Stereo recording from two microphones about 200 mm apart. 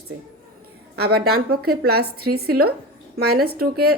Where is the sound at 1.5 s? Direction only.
90° right.